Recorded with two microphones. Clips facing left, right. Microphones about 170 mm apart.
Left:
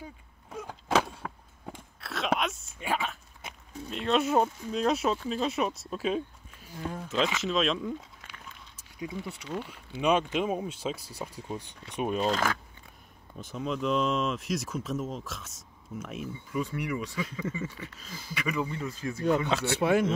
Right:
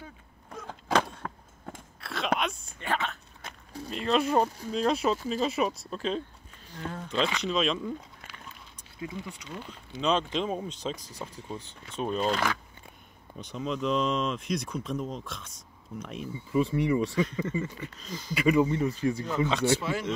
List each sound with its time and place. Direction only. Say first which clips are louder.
0.0 s a sound: left 2 dB; 10° left (ahead or behind)
2.0 s biting: even; centre (ahead or behind)
3.9 s speech: even; centre (ahead or behind)
8.9 s speech: left 1 dB; 20° left (ahead or behind)
9.7 s speech: left 1 dB; 10° left (ahead or behind)
12.3 s speech: right 1 dB; 45° left (ahead or behind)
13.4 s speech: even; centre (ahead or behind)
16.5 s speech: right 7 dB; 30° right (ahead or behind)
17.1 s speech: right 5 dB; 5° left (ahead or behind)
18.6 s speech: right 8 dB; 25° right (ahead or behind)
19.2 s speech: left 4 dB; 65° left (ahead or behind)